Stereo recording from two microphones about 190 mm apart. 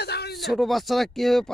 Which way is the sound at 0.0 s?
60° left (ahead or behind).